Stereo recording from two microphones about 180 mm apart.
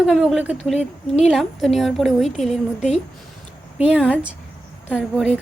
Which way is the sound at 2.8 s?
40° left (ahead or behind).